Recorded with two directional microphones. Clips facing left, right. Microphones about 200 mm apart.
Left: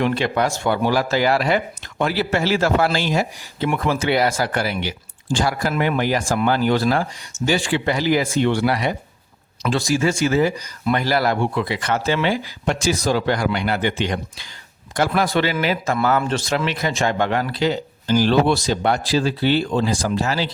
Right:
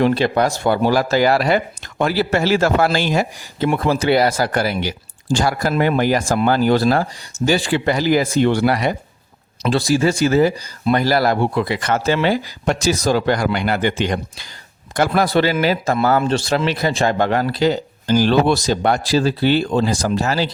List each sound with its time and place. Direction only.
0.0 s speech: 35° right (ahead or behind)
3.7 s speech: 35° right (ahead or behind)
9.7 s speech: 35° right (ahead or behind)